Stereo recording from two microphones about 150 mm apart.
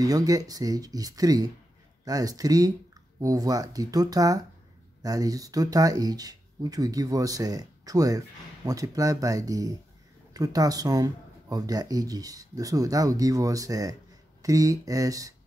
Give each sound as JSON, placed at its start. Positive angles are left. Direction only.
{"t": 0.0, "sound": "speech", "side_deg": -25}